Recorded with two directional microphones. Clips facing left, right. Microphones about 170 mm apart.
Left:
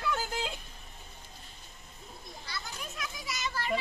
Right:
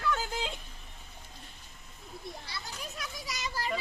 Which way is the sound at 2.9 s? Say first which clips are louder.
Left 1 dB; 35° right (ahead or behind).